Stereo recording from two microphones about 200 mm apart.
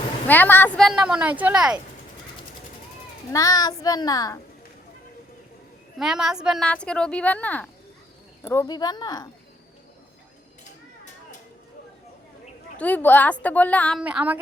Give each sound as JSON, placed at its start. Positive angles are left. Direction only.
{"t": 0.3, "sound": "speech", "side_deg": 10}
{"t": 3.3, "sound": "child singing", "side_deg": 20}
{"t": 6.0, "sound": "a woman's voice", "side_deg": 0}
{"t": 10.6, "sound": "a sound", "side_deg": 40}
{"t": 12.8, "sound": "child singing", "side_deg": 10}
{"t": 14.0, "sound": "a sound", "side_deg": -5}